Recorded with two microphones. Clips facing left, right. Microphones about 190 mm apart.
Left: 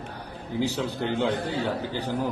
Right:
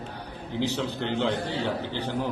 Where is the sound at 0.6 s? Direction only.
10° left (ahead or behind).